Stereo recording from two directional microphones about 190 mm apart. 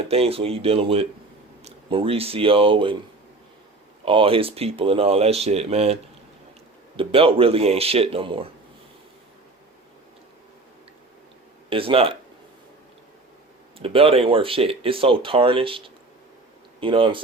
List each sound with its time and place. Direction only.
0.1 s speech: 30° right (ahead or behind)
4.0 s speech: 30° right (ahead or behind)
11.7 s speech: 30° right (ahead or behind)
13.7 s speech: 30° right (ahead or behind)
16.8 s speech: 25° right (ahead or behind)